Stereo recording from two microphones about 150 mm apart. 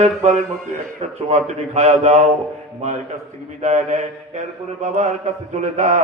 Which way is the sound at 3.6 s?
50° right (ahead or behind).